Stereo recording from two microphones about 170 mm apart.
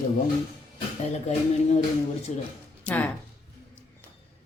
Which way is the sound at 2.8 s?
10° left (ahead or behind).